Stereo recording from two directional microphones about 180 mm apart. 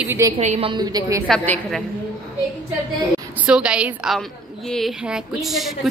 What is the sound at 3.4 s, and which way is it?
A woman's voice, 5° right (ahead or behind).